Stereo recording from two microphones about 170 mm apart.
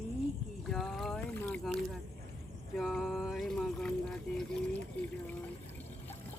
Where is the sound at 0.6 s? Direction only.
Centre (ahead or behind).